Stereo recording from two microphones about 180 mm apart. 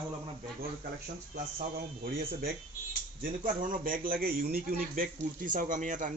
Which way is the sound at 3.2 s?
50° right (ahead or behind).